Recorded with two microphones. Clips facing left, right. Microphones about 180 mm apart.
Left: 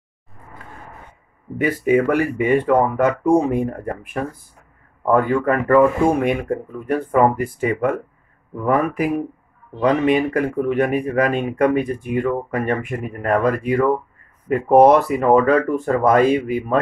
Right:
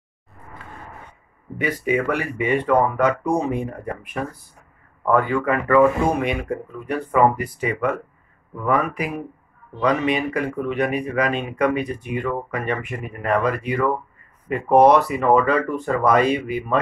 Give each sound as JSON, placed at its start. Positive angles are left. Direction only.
{"t": 1.6, "sound": "speech", "side_deg": 45}